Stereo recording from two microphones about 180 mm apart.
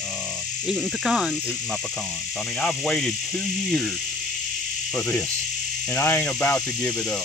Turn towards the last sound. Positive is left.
turn(degrees=5)  # may be behind; listen again after turning